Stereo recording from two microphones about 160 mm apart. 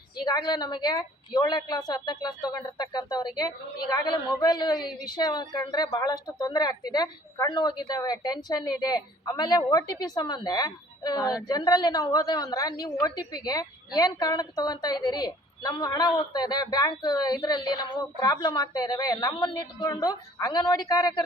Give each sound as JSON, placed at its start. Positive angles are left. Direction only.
{"t": 0.2, "sound": "a woman's voice", "side_deg": 25}